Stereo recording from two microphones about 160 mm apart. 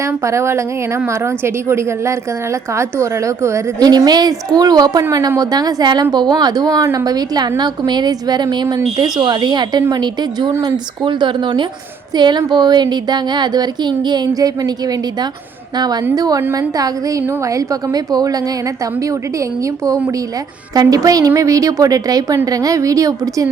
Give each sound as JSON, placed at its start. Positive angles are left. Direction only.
{"t": 0.0, "sound": "a woman's voice", "side_deg": -20}
{"t": 19.6, "sound": "a woman's voice", "side_deg": -20}